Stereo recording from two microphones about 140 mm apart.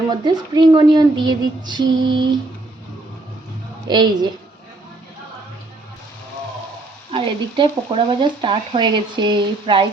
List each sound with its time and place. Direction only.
0.1 s speech: 30° right (ahead or behind)
3.8 s speech: 30° right (ahead or behind)
7.1 s speech: 35° right (ahead or behind)